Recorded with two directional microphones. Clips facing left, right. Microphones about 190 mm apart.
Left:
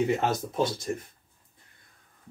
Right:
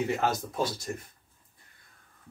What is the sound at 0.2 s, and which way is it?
Speech, 25° left (ahead or behind).